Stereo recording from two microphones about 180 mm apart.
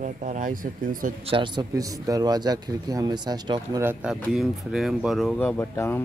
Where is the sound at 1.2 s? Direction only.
30° right (ahead or behind).